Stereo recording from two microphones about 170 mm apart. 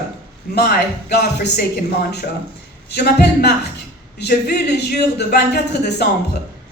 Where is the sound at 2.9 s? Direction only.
70° left (ahead or behind).